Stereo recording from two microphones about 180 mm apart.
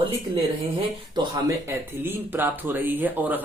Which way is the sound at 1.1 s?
25° right (ahead or behind).